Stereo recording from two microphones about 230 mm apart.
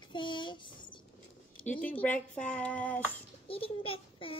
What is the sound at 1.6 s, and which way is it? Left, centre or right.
Speech, centre.